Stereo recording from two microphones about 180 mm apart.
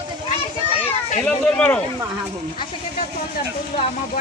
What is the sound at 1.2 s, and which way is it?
Speech, 5° left (ahead or behind).